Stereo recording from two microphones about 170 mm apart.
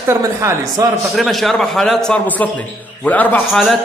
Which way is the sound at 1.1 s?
Centre (ahead or behind).